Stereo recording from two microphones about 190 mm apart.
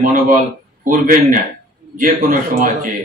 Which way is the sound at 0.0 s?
45° right (ahead or behind).